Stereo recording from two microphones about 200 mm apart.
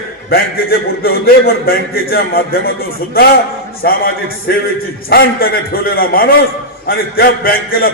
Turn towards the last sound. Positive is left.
turn(degrees=50)  # may be behind; listen again after turning